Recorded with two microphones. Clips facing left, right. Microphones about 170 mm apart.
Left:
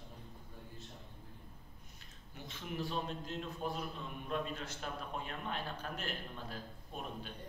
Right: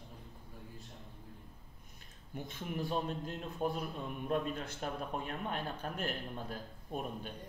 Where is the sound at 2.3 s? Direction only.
50° right (ahead or behind).